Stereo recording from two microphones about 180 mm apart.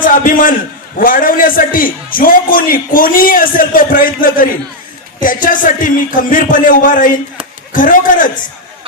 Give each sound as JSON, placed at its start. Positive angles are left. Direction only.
{"t": 0.0, "sound": "a man's voice", "side_deg": 50}